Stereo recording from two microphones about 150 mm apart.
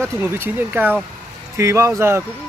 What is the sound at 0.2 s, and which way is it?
Speech, 15° right (ahead or behind).